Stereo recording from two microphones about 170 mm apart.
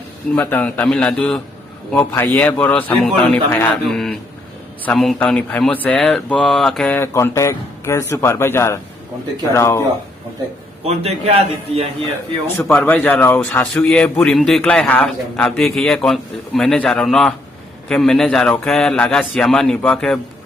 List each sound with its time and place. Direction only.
0.3 s speech: 10° left (ahead or behind)
10.8 s a man's voice: 35° right (ahead or behind)
12.5 s speech: 5° left (ahead or behind)